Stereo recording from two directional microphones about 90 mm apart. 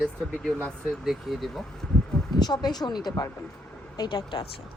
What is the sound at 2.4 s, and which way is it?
Speech, 50° left (ahead or behind).